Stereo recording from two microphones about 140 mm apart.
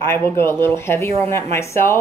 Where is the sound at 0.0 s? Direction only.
15° left (ahead or behind).